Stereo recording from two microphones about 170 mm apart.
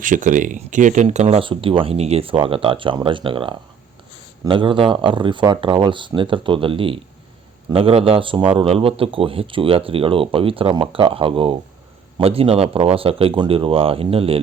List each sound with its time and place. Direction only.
0.0 s speech: 50° right (ahead or behind); by 14.3 s 35° right (ahead or behind)